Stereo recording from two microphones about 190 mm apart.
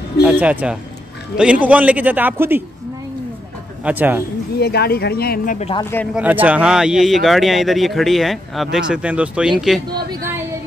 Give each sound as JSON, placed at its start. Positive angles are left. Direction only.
{"t": 0.2, "sound": "speech", "side_deg": -5}
{"t": 3.8, "sound": "speech", "side_deg": -10}
{"t": 4.6, "sound": "speech", "side_deg": 55}
{"t": 5.6, "sound": "speech", "side_deg": 30}
{"t": 6.1, "sound": "speech", "side_deg": -10}